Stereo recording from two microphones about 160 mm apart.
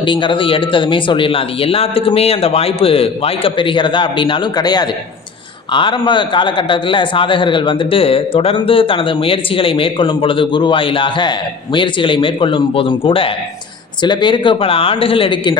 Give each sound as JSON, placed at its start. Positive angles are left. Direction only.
{"t": 0.0, "sound": "a man's voice", "side_deg": 30}